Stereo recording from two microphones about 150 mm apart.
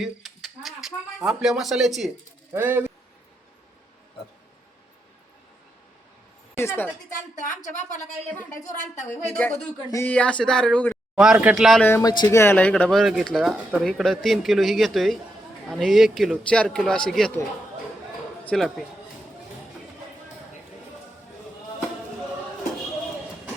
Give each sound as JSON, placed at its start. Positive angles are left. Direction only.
{"t": 0.0, "sound": "speech", "side_deg": 0}
{"t": 2.5, "sound": "speech", "side_deg": -15}
{"t": 6.6, "sound": "speech", "side_deg": 15}
{"t": 9.0, "sound": "speech", "side_deg": 10}
{"t": 11.1, "sound": "speech", "side_deg": -5}
{"t": 11.8, "sound": "speech", "side_deg": 15}
{"t": 18.4, "sound": "speech", "side_deg": 0}